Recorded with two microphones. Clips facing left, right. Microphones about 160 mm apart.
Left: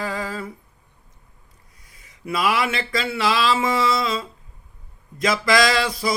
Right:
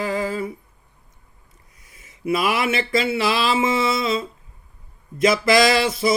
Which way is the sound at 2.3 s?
25° right (ahead or behind).